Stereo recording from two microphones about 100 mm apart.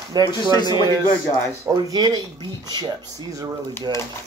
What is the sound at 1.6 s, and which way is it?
Speech, 35° right (ahead or behind).